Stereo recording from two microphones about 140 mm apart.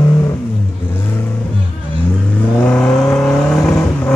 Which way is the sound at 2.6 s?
5° left (ahead or behind).